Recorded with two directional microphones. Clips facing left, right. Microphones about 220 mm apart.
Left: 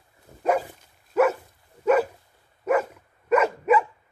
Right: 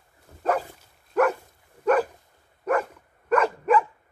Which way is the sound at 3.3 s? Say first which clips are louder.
Left 1 dB; 10° left (ahead or behind).